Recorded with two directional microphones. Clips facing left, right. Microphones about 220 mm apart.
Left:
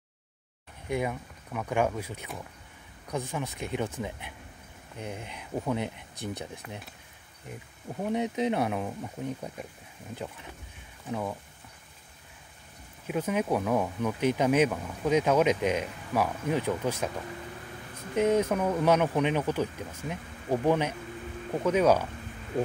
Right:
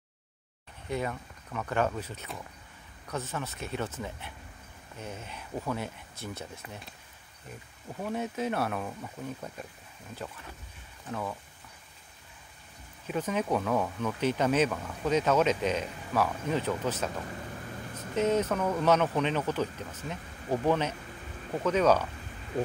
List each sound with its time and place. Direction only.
0.8 s speech: 15° left (ahead or behind)
13.0 s speech: 10° left (ahead or behind)
18.1 s speech: 10° left (ahead or behind)